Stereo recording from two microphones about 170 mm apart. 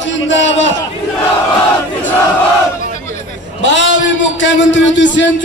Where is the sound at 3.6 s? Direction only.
90° left.